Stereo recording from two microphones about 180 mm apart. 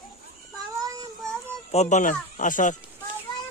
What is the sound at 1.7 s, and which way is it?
Speech, 40° left (ahead or behind).